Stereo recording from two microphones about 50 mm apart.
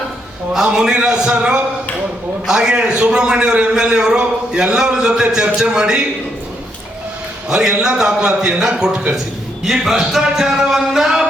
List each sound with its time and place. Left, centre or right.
0.5 s a man's voice: centre
2.5 s a man's voice: centre
7.5 s a man's voice: centre